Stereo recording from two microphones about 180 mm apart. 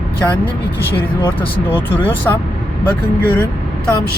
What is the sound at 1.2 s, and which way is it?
Speech, 10° left (ahead or behind).